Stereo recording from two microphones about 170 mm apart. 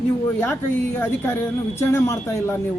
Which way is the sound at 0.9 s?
10° left (ahead or behind).